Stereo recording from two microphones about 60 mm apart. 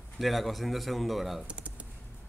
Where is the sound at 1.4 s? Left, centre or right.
Centre.